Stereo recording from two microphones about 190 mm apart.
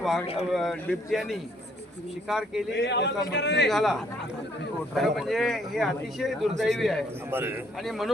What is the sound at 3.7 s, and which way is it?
Speech, centre (ahead or behind).